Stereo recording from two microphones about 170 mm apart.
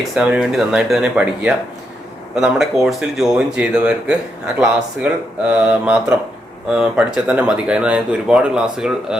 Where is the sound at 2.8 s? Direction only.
5° right (ahead or behind).